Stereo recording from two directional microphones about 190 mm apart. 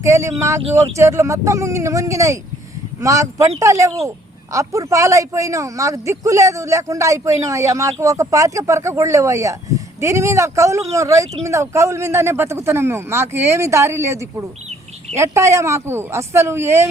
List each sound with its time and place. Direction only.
0.0 s speech: 15° right (ahead or behind)